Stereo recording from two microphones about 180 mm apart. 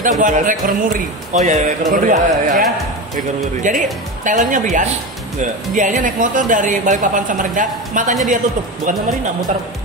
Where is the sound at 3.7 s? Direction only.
45° right (ahead or behind).